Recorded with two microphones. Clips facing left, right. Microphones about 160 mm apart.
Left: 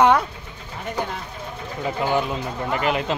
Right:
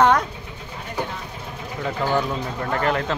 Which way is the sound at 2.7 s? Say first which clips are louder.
Even; 15° left (ahead or behind).